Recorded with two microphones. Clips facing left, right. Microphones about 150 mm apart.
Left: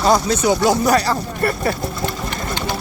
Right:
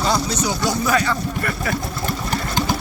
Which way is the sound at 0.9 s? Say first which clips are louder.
Left 2 dB; 40° left (ahead or behind).